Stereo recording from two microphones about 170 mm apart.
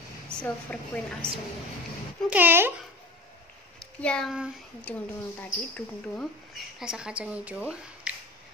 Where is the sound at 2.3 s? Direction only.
10° right (ahead or behind).